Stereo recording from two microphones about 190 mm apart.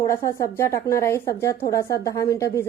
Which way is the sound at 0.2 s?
15° left (ahead or behind).